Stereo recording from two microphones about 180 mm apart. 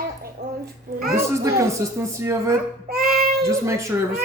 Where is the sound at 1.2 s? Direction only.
15° right (ahead or behind).